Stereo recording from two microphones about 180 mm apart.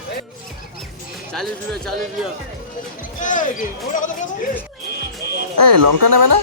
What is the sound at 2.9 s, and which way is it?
Music, 45° left (ahead or behind).